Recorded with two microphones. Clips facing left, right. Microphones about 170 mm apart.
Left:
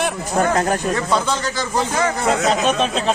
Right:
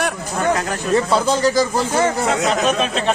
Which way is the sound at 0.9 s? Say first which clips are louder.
Right 3 dB; 30° right (ahead or behind).